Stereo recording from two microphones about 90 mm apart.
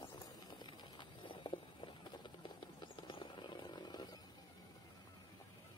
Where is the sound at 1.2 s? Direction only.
70° left (ahead or behind).